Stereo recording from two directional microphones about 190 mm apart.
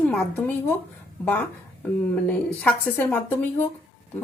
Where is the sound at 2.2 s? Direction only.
5° left (ahead or behind).